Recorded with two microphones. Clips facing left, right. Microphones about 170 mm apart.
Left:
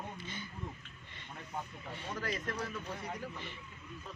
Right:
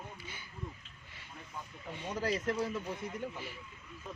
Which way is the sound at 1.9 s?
15° right (ahead or behind).